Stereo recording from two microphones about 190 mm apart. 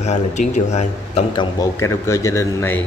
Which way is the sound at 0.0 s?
40° left (ahead or behind).